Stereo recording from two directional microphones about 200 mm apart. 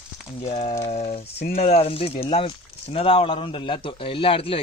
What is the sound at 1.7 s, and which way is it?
Speech, 30° left (ahead or behind).